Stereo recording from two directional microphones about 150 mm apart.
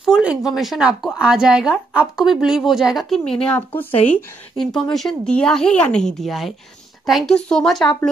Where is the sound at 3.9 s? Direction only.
55° left (ahead or behind).